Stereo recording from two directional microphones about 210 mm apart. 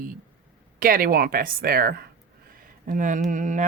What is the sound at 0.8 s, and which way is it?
Speech, 45° right (ahead or behind).